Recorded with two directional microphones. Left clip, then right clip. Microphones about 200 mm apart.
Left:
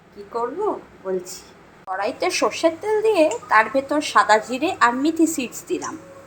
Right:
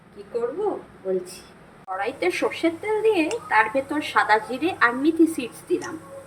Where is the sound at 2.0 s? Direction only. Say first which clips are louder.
Left 3 dB; 15° left (ahead or behind).